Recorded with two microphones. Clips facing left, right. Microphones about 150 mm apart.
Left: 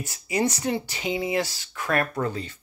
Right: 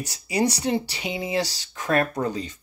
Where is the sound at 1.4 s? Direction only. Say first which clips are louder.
Right 1 dB; 35° right (ahead or behind).